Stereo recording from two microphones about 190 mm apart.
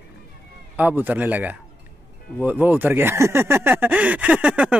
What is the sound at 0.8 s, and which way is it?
Speech, 10° right (ahead or behind).